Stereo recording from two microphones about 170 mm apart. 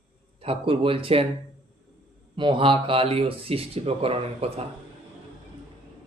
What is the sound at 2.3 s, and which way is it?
Speech, 30° right (ahead or behind).